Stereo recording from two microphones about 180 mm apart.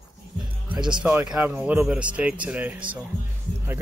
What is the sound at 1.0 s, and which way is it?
Speech, 10° right (ahead or behind).